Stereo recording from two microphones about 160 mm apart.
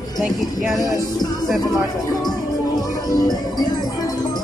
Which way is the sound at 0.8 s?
20° left (ahead or behind).